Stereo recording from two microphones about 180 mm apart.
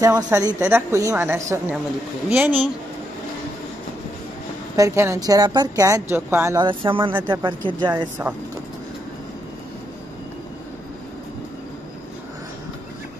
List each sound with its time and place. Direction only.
0.0 s a woman's voice: 15° right (ahead or behind)
4.7 s a woman's voice: 15° right (ahead or behind)
6.6 s speech: 30° right (ahead or behind)